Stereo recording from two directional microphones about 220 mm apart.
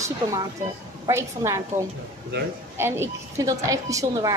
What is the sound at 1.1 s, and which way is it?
Speech, 15° right (ahead or behind).